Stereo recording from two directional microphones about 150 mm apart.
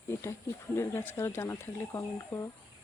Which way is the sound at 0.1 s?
20° left (ahead or behind).